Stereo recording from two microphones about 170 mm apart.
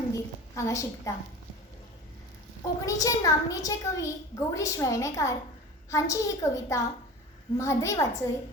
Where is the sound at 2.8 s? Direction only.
20° left (ahead or behind).